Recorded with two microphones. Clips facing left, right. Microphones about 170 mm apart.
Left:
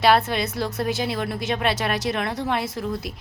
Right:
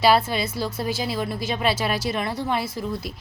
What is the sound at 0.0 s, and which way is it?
A woman's voice, centre (ahead or behind).